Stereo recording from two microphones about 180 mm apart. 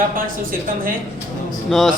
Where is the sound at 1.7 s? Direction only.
Centre (ahead or behind).